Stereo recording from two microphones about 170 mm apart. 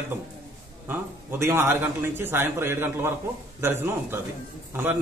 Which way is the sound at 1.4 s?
15° right (ahead or behind).